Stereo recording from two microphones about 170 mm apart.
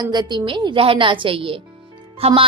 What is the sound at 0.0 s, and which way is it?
A woman's voice, 25° right (ahead or behind).